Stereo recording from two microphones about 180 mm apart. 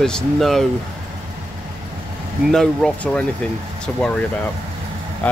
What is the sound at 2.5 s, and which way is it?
Speech, 5° left (ahead or behind).